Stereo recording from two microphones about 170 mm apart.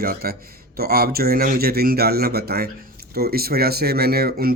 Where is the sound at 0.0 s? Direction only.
60° right (ahead or behind).